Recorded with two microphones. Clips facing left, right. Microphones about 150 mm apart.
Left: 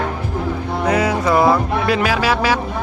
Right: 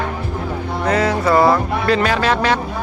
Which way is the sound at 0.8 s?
10° left (ahead or behind).